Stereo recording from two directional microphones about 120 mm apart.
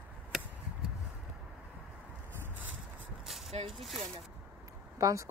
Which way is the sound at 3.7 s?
Centre (ahead or behind).